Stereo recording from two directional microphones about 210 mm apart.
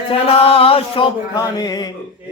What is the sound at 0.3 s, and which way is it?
Mantra, 25° left (ahead or behind).